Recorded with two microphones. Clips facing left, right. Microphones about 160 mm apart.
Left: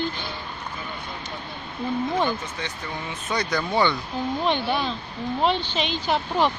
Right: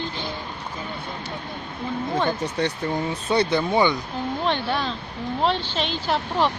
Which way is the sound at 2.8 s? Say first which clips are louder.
Right 7 dB; 35° right (ahead or behind).